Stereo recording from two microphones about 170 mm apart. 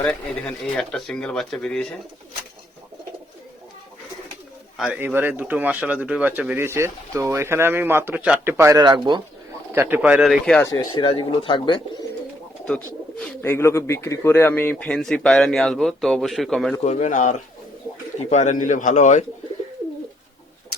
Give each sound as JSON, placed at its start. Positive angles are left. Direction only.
{"t": 0.0, "sound": "speech", "side_deg": 5}
{"t": 4.8, "sound": "speech", "side_deg": -10}
{"t": 8.5, "sound": "speech", "side_deg": -20}
{"t": 9.7, "sound": "speech", "side_deg": -10}
{"t": 10.7, "sound": "speech", "side_deg": 30}
{"t": 12.6, "sound": "speech", "side_deg": 5}
{"t": 16.8, "sound": "a man's voice", "side_deg": 45}